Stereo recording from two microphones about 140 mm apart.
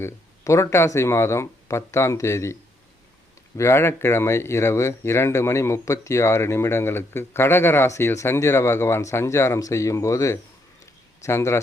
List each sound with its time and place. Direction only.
0.0 s speech: 20° left (ahead or behind)
3.6 s speech: 20° left (ahead or behind)